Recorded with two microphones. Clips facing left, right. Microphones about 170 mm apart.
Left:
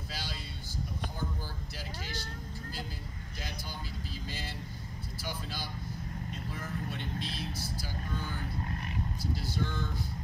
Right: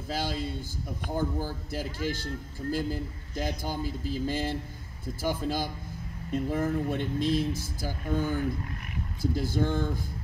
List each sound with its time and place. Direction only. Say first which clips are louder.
0.1 s speech: right 14 dB; 50° right (ahead or behind)